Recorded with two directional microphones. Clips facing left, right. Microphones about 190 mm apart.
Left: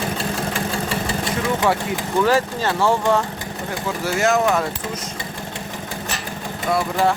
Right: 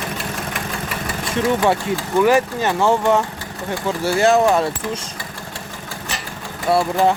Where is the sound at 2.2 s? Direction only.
15° right (ahead or behind).